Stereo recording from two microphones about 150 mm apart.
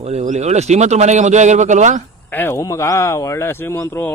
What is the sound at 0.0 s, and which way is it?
Speech, 45° right (ahead or behind).